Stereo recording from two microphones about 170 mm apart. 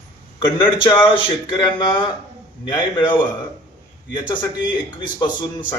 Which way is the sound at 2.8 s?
25° left (ahead or behind).